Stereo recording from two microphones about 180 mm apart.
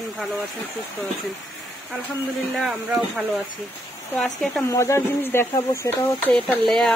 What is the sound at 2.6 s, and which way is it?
Speech, 5° right (ahead or behind).